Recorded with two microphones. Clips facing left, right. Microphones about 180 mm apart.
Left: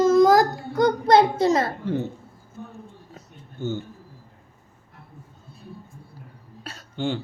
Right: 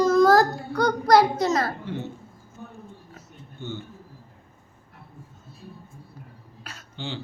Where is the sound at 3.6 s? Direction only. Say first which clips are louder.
Left 7 dB; 45° left (ahead or behind).